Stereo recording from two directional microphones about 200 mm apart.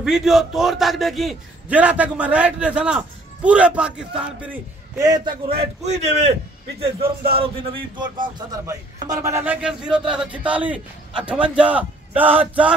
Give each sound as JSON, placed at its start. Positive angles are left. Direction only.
{"t": 0.0, "sound": "a man's voice", "side_deg": 0}
{"t": 4.9, "sound": "a man's voice", "side_deg": -20}